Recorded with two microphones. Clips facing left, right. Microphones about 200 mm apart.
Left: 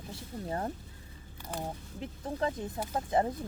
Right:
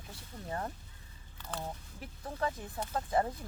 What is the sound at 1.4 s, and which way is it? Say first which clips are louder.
Speech: left 3 dB; 15° left (ahead or behind).